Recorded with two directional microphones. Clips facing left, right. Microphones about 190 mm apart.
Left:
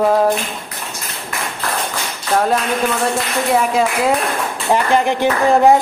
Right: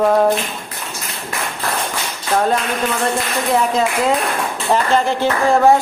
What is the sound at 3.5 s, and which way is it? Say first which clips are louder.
A woman's voice: even; 10° left (ahead or behind).